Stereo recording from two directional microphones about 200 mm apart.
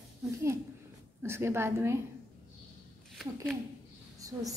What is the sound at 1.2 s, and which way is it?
Speech, 10° right (ahead or behind).